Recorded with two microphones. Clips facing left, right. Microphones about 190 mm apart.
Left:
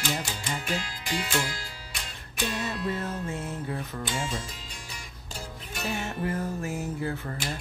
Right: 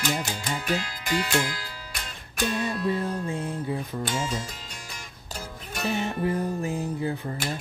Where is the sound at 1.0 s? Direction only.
55° right (ahead or behind).